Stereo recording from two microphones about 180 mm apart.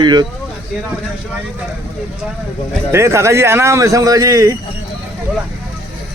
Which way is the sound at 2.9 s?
15° right (ahead or behind).